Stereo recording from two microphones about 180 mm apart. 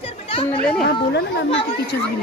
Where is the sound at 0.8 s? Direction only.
65° left (ahead or behind).